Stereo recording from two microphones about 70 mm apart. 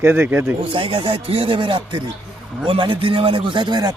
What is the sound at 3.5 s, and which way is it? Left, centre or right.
Speech, right.